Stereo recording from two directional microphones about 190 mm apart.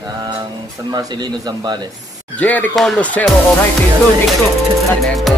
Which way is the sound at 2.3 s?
10° left (ahead or behind).